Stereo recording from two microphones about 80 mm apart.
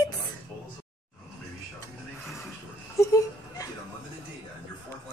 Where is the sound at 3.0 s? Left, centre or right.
Left.